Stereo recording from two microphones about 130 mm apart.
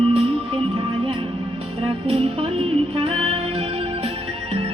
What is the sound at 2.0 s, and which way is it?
Music, 45° right (ahead or behind).